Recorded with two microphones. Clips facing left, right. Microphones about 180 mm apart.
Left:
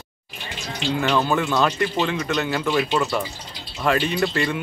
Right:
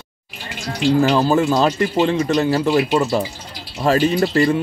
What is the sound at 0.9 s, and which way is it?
Speech, 35° right (ahead or behind).